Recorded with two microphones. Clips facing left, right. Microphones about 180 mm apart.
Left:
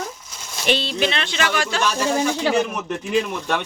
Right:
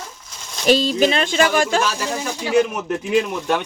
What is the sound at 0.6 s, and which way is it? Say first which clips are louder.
Speech: right 6 dB; 40° right (ahead or behind).